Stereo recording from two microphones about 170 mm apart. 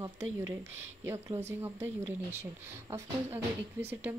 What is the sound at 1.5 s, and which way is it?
Speech, 15° right (ahead or behind).